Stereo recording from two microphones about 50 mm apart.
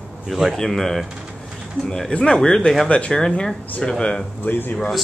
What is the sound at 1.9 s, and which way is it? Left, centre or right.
Speech, centre.